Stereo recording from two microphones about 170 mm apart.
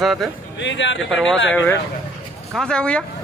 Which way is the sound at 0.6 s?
90° left.